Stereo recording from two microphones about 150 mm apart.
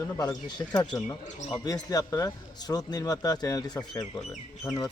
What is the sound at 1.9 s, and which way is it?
Speech, 25° left (ahead or behind).